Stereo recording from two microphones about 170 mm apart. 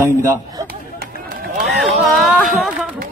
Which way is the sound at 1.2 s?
55° right (ahead or behind).